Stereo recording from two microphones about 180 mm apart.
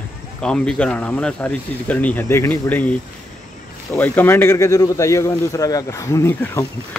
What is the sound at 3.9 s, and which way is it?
Speech, 10° left (ahead or behind).